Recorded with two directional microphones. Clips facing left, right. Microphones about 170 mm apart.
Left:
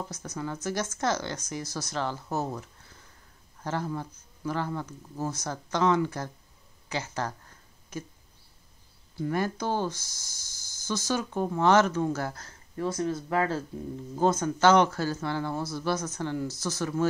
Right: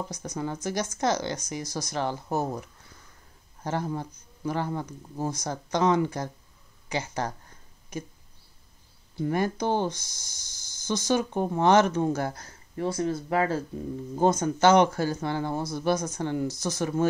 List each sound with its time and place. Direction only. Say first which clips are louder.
0.1 s speech: right 3 dB; 15° right (ahead or behind)
3.6 s speech: right 2 dB; 20° right (ahead or behind)
6.9 s a sound: right 2 dB; 15° right (ahead or behind)
9.1 s speech: right 2 dB; 20° right (ahead or behind)